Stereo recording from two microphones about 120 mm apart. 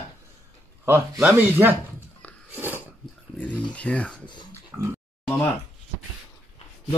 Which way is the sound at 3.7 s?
10° left (ahead or behind).